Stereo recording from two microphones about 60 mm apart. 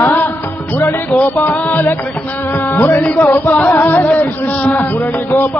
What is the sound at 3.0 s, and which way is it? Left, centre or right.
Music, left.